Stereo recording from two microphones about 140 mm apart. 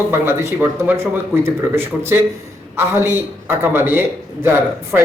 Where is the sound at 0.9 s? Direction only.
15° right (ahead or behind).